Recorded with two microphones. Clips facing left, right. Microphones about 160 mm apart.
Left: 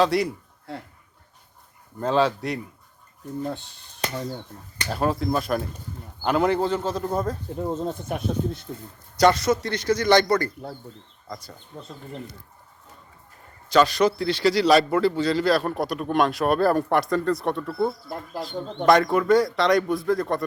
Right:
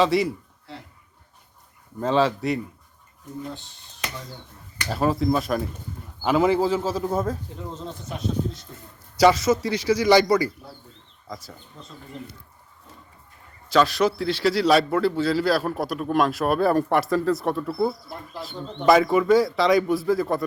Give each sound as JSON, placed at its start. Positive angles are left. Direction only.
{"t": 0.0, "sound": "a man's voice", "side_deg": 0}
{"t": 2.0, "sound": "a man's voice", "side_deg": 0}
{"t": 4.9, "sound": "a man's voice", "side_deg": 0}
{"t": 7.5, "sound": "speech", "side_deg": 50}
{"t": 9.1, "sound": "a man's voice", "side_deg": -5}
{"t": 11.7, "sound": "speech", "side_deg": 55}
{"t": 13.7, "sound": "a man's voice", "side_deg": 0}